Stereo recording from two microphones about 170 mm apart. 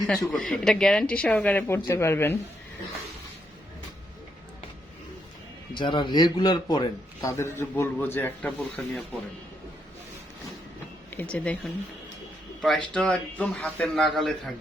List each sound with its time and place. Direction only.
0.3 s speech: 5° left (ahead or behind)
5.7 s speech: 25° left (ahead or behind); by 9.0 s 5° left (ahead or behind)
11.2 s a man's voice: 5° left (ahead or behind)